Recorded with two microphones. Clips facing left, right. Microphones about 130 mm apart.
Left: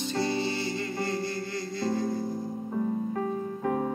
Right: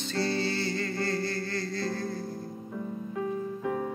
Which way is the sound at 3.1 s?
45° left (ahead or behind).